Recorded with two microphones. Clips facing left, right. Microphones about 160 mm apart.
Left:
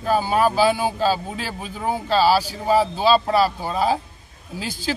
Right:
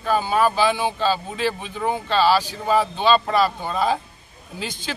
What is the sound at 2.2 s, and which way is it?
Speech, 10° left (ahead or behind).